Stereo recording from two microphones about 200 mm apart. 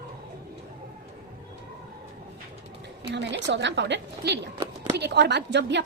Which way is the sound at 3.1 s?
55° right (ahead or behind).